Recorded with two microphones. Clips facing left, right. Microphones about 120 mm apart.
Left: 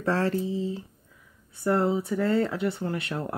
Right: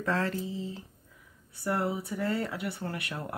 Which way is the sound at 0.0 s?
30° left (ahead or behind).